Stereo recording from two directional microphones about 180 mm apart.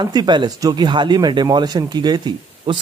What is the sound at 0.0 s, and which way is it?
Speech, 25° right (ahead or behind).